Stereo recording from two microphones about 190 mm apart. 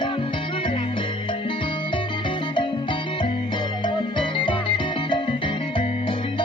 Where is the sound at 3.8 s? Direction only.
25° left (ahead or behind).